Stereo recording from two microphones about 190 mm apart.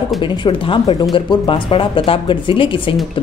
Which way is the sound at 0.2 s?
25° left (ahead or behind).